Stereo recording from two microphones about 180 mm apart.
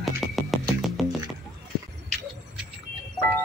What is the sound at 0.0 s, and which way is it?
Music, centre (ahead or behind).